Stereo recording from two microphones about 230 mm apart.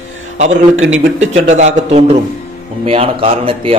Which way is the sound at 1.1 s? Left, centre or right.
Right.